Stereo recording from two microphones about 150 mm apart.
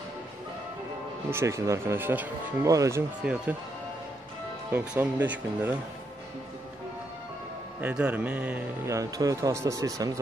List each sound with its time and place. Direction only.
1.3 s speech: 20° right (ahead or behind)
3.2 s speech: 5° right (ahead or behind)
4.6 s speech: 10° right (ahead or behind)
7.8 s a man's voice: 10° right (ahead or behind)